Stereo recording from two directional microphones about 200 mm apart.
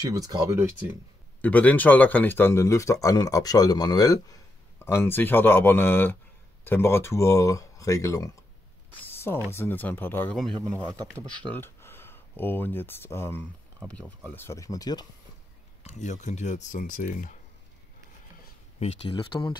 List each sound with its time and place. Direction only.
0.0 s speech: 20° right (ahead or behind)
1.4 s speech: 10° left (ahead or behind)
8.9 s a sound: 10° left (ahead or behind)
9.5 s speech: 10° left (ahead or behind)
10.8 s speech: 20° right (ahead or behind)
11.5 s speech: 10° left (ahead or behind)
15.8 s speech: 35° left (ahead or behind)
18.8 s speech: 30° left (ahead or behind)